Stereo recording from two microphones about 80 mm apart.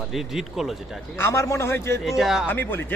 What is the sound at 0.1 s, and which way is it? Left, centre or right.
Speech, centre.